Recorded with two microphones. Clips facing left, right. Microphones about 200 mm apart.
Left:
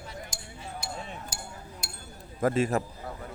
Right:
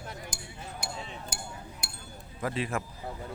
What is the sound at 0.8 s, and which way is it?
Chink, 55° right (ahead or behind).